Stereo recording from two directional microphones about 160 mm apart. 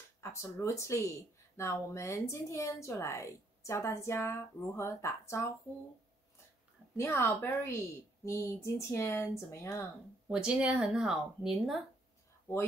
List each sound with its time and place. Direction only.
0.2 s a woman's voice: 15° left (ahead or behind)
7.0 s a woman's voice: 15° left (ahead or behind)
10.2 s speech: 5° right (ahead or behind)